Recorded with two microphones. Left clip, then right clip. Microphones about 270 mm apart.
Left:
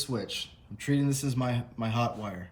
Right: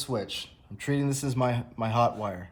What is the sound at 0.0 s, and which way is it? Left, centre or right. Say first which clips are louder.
Speech: right 2 dB; centre.